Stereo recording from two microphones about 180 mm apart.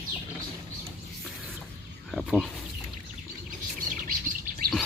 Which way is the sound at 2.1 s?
5° left (ahead or behind).